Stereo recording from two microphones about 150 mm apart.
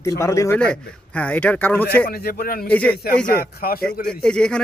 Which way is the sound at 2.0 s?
85° left.